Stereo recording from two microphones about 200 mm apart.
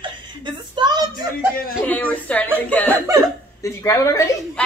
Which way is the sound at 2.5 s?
10° left (ahead or behind).